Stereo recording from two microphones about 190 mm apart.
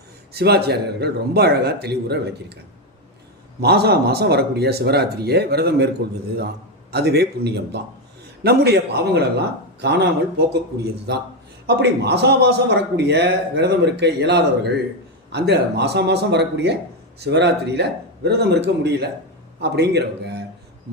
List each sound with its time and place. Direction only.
0.3 s a man's voice: 55° right (ahead or behind)
3.6 s a man's voice: 60° right (ahead or behind)
6.9 s a man's voice: 60° right (ahead or behind)